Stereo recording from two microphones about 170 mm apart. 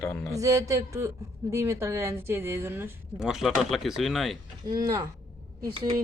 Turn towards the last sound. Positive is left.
turn(degrees=-25)  # may be behind; listen again after turning